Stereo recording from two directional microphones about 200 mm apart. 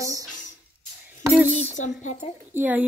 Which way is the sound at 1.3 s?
5° right (ahead or behind).